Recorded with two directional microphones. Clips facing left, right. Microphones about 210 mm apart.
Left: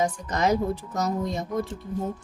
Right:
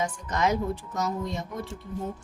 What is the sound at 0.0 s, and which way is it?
Speech, 35° left (ahead or behind).